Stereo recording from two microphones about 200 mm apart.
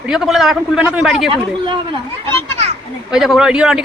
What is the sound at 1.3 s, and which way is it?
Speech, 25° right (ahead or behind).